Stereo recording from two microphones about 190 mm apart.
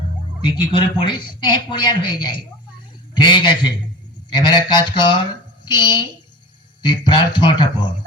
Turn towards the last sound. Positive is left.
turn(degrees=25)  # may be behind; listen again after turning